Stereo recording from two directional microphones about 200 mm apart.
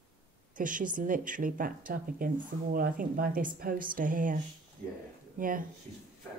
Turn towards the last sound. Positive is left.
turn(degrees=-45)  # may be behind; listen again after turning